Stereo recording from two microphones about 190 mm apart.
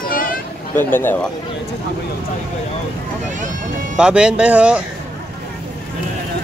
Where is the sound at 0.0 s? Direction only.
45° left (ahead or behind).